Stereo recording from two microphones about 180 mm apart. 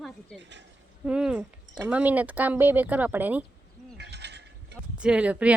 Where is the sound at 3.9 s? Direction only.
70° right (ahead or behind).